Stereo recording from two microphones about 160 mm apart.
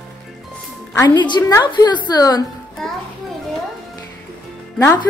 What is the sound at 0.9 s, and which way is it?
A woman's voice, 25° left (ahead or behind).